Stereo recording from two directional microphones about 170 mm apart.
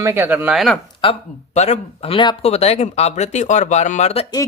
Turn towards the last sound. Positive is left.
turn(degrees=40)  # may be behind; listen again after turning